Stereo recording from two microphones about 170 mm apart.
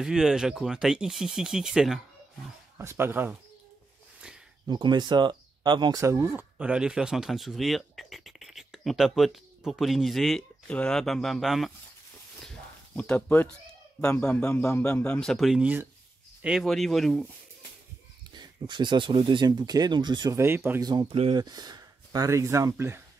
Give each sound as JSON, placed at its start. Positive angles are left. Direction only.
{"t": 0.0, "sound": "speech", "side_deg": -5}
{"t": 2.8, "sound": "speech", "side_deg": -15}
{"t": 4.6, "sound": "speech", "side_deg": -25}
{"t": 12.4, "sound": "a sound", "side_deg": 5}
{"t": 14.0, "sound": "speech", "side_deg": 10}
{"t": 18.3, "sound": "speech", "side_deg": -25}
{"t": 20.9, "sound": "speech", "side_deg": -25}